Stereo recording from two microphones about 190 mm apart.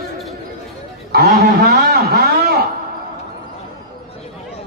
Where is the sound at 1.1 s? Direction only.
55° right (ahead or behind).